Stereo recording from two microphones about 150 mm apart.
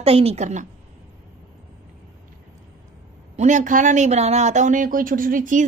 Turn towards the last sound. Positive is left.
turn(degrees=-60)  # may be behind; listen again after turning